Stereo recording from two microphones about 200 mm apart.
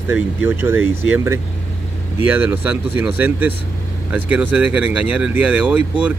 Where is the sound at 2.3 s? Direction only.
10° right (ahead or behind).